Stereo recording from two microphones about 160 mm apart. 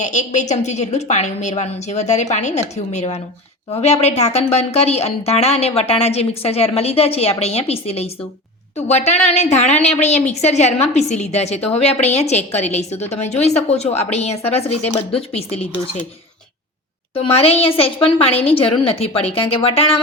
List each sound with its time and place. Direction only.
0.0 s a woman's voice: 50° left (ahead or behind)
17.2 s a woman's voice: 40° left (ahead or behind)